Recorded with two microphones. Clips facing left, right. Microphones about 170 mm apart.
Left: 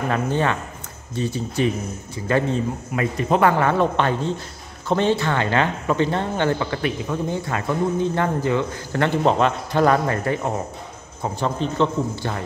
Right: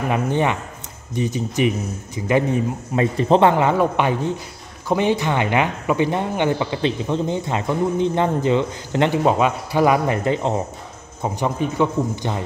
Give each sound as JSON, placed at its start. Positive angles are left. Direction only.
{"t": 0.1, "sound": "speech", "side_deg": -15}
{"t": 3.0, "sound": "speech", "side_deg": -30}
{"t": 9.2, "sound": "speech", "side_deg": -10}